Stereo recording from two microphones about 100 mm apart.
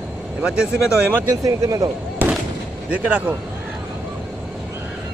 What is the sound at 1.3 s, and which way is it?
Speech, 35° right (ahead or behind).